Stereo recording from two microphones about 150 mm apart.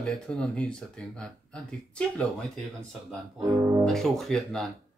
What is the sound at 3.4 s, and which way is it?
Speech, 20° right (ahead or behind).